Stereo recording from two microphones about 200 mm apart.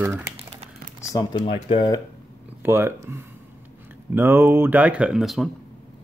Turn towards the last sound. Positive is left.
turn(degrees=0)  # may be behind; listen again after turning